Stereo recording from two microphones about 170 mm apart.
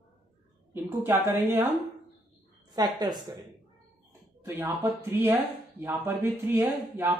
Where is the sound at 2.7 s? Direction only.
25° right (ahead or behind).